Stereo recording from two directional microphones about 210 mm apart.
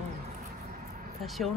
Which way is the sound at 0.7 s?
40° right (ahead or behind).